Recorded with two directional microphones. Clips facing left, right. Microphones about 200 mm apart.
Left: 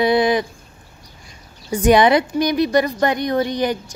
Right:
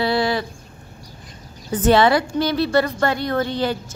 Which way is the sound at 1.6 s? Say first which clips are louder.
Left 2 dB; 15° left (ahead or behind).